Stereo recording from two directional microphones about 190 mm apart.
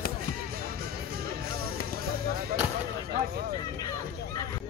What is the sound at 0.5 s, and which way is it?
Music, 50° right (ahead or behind).